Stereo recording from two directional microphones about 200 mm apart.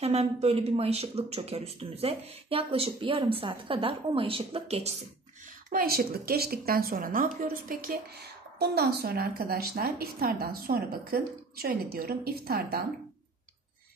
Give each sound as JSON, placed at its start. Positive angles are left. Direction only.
{"t": 0.0, "sound": "speech", "side_deg": -30}
{"t": 5.7, "sound": "a woman's voice", "side_deg": -45}